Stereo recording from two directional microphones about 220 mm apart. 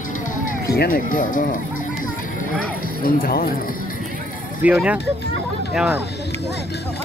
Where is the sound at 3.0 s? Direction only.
40° left (ahead or behind).